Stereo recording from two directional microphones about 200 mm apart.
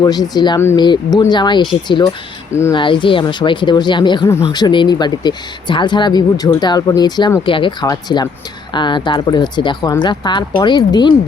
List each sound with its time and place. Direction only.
0.0 s speech: 20° left (ahead or behind)
2.7 s speech: 25° left (ahead or behind)